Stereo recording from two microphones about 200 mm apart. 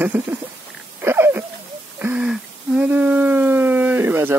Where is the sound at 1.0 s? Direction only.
10° right (ahead or behind).